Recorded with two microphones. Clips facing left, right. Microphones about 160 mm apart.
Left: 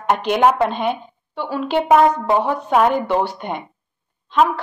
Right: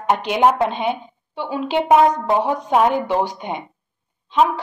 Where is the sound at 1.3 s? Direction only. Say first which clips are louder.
Left 1 dB; 15° right (ahead or behind).